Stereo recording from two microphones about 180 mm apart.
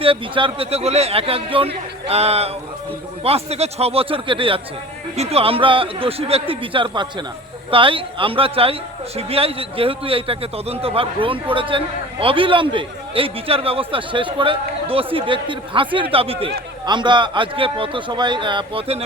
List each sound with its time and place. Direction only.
0.0 s a man's voice: 30° right (ahead or behind)